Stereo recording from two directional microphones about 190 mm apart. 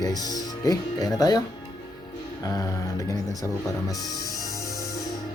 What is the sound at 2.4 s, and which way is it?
Speech, 20° left (ahead or behind).